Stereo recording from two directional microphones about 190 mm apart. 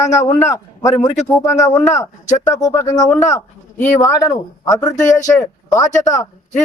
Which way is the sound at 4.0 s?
20° left (ahead or behind).